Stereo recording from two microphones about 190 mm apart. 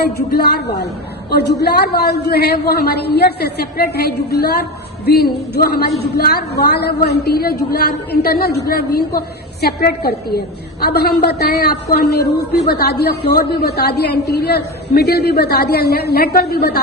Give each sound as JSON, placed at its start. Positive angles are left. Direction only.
{"t": 0.3, "sound": "a woman's voice", "side_deg": 60}